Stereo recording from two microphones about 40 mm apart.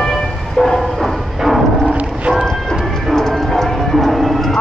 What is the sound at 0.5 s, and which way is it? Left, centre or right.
Train, centre.